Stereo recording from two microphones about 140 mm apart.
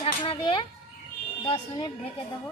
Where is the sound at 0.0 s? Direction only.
35° left (ahead or behind).